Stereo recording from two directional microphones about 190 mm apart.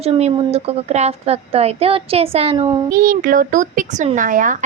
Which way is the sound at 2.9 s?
50° right (ahead or behind).